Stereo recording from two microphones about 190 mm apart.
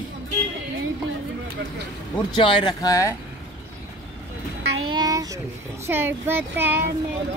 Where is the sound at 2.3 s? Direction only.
25° left (ahead or behind).